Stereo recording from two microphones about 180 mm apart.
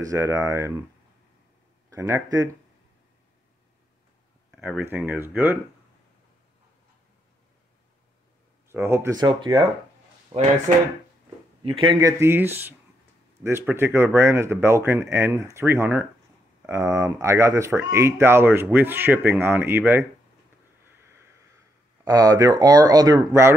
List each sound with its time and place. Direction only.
0.0 s speech: 15° right (ahead or behind)
1.9 s speech: 15° right (ahead or behind)
4.5 s speech: 10° right (ahead or behind)
8.6 s speech: 15° right (ahead or behind); by 10.5 s 35° right (ahead or behind)
11.6 s speech: 30° right (ahead or behind); by 20.1 s 10° right (ahead or behind)
22.0 s speech: 20° right (ahead or behind)